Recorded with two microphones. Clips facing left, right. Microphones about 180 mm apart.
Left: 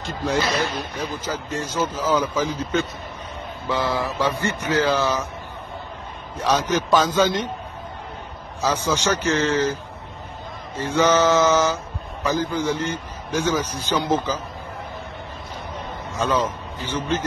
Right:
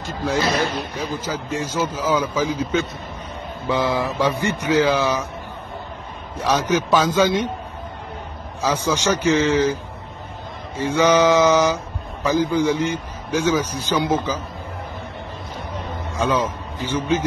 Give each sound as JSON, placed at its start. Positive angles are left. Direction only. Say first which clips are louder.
{"t": 1.0, "sound": "speech", "louder": "right 2 dB", "side_deg": -10}
{"t": 6.3, "sound": "speech", "louder": "right 1 dB", "side_deg": -10}
{"t": 8.5, "sound": "speech", "louder": "right 1 dB", "side_deg": -10}
{"t": 10.8, "sound": "speech", "louder": "right 2 dB", "side_deg": -10}
{"t": 16.1, "sound": "a man's voice", "louder": "right 1 dB", "side_deg": -10}